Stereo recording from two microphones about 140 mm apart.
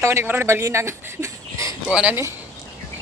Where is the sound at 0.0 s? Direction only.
20° right (ahead or behind).